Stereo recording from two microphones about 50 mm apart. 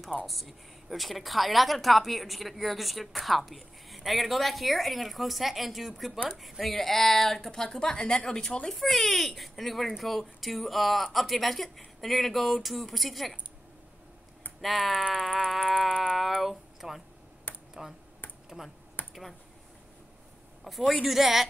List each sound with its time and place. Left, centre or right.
0.3 s a woman's voice: centre
14.6 s a woman's voice: centre
15.9 s music: centre
16.2 s a woman's voice: centre
17.5 s finger snapping: left
19.0 s a sound: left
20.6 s a woman's voice: centre